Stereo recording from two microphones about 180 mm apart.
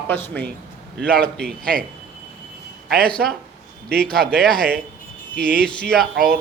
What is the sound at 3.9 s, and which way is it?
Speech, 60° right (ahead or behind).